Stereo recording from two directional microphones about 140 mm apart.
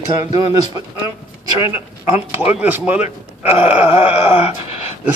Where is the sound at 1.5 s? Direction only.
20° right (ahead or behind).